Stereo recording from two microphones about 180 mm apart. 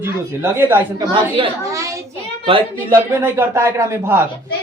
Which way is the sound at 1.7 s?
15° right (ahead or behind).